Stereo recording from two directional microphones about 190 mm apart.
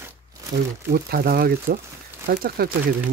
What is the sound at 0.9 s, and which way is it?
Speech, 55° right (ahead or behind).